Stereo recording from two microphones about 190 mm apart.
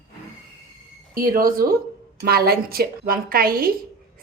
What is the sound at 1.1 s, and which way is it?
Speech, 50° right (ahead or behind).